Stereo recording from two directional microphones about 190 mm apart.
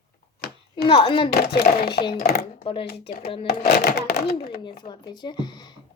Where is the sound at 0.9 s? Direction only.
25° left (ahead or behind).